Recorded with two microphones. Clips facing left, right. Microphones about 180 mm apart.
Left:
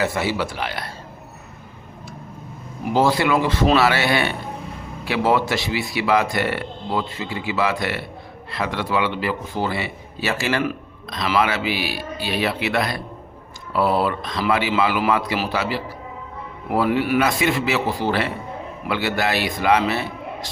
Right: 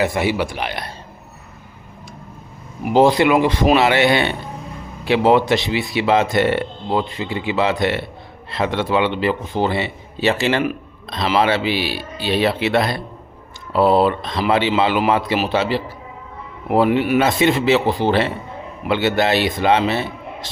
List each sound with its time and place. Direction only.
0.0 s speech: 15° right (ahead or behind)
2.9 s a man's voice: 20° right (ahead or behind)